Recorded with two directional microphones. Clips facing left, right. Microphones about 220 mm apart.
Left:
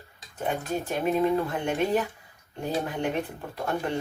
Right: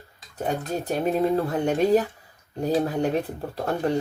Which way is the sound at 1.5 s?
40° right (ahead or behind).